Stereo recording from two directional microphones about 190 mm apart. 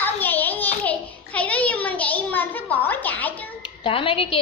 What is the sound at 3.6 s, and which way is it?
Speech, 30° left (ahead or behind).